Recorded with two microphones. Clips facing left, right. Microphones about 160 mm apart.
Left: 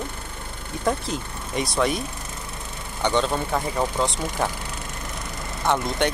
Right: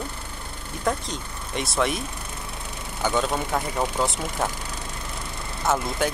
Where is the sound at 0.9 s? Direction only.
Centre (ahead or behind).